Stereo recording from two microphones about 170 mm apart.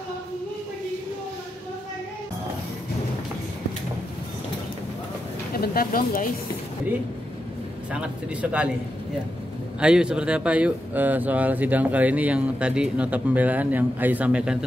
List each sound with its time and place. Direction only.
5.5 s speech: 60° left (ahead or behind)
7.9 s speech: 5° right (ahead or behind)
9.8 s speech: 5° right (ahead or behind)